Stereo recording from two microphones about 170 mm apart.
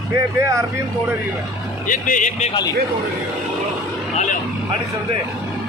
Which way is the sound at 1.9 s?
50° left (ahead or behind).